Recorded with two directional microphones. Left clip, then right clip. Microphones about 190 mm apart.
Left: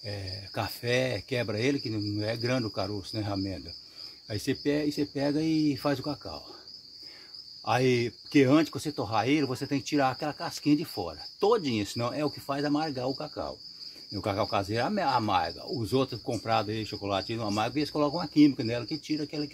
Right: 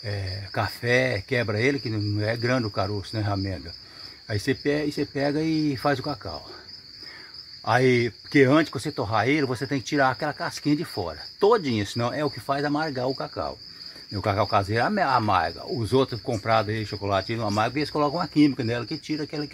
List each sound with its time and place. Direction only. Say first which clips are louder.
0.0 s speech: right 4 dB; 20° right (ahead or behind)
7.6 s speech: right 5 dB; 25° right (ahead or behind)